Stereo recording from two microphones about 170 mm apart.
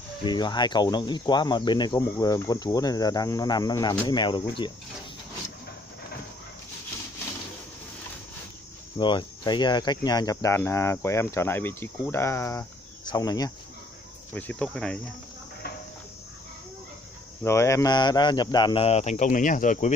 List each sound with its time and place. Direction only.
0.2 s speech: 25° left (ahead or behind)
8.9 s speech: 25° left (ahead or behind)
14.3 s cricket: 10° left (ahead or behind)
17.4 s speech: 15° left (ahead or behind)
18.9 s speech: 40° left (ahead or behind)